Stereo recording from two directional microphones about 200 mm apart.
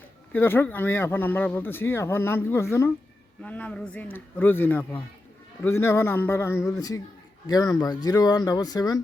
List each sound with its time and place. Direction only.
0.3 s speech: 10° left (ahead or behind)